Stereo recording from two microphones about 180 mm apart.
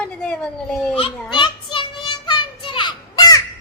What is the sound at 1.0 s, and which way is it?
Child singing, 25° left (ahead or behind).